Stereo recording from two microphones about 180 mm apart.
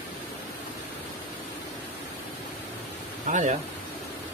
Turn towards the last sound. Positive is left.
turn(degrees=-45)  # may be behind; listen again after turning